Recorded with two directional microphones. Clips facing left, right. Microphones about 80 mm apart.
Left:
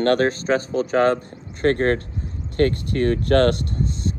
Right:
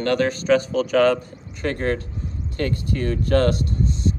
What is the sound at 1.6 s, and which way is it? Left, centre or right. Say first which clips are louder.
Speech: left 5 dB; left.